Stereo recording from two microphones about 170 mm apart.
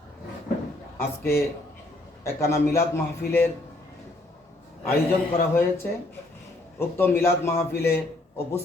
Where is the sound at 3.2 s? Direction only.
65° left (ahead or behind).